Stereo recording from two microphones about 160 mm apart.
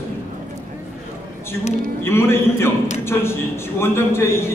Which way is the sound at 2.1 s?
15° left (ahead or behind).